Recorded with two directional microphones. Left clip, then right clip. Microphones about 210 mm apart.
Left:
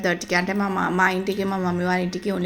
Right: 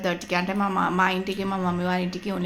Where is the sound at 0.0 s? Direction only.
15° left (ahead or behind).